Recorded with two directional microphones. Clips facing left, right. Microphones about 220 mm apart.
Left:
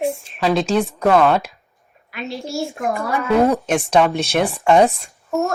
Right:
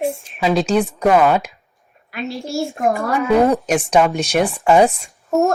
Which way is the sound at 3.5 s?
10° right (ahead or behind).